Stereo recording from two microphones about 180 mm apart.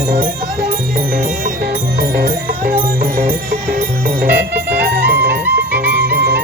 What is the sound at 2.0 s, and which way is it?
Music, 55° right (ahead or behind).